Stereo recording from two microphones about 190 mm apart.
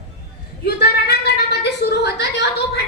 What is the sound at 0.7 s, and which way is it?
A woman's voice, 60° left (ahead or behind).